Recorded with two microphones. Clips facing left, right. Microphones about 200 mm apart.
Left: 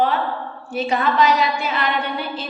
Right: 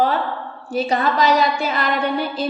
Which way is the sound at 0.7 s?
35° right (ahead or behind).